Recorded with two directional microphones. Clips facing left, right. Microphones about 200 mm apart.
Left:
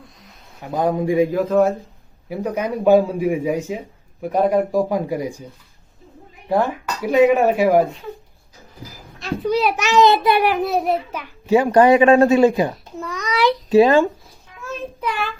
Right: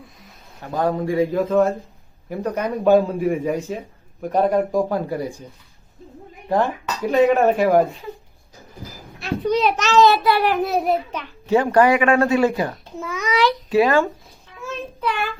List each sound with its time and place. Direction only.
0.6 s speech: 15° left (ahead or behind)
1.3 s a child's voice: centre (ahead or behind)
6.6 s speech: 5° left (ahead or behind)
9.2 s a child's voice: centre (ahead or behind)
9.9 s speech: 20° left (ahead or behind)
10.5 s a child's voice: centre (ahead or behind)
11.8 s speech: 25° left (ahead or behind)
12.7 s a child's voice: centre (ahead or behind)
13.4 s speech: 25° left (ahead or behind)
14.6 s child singing: 5° left (ahead or behind)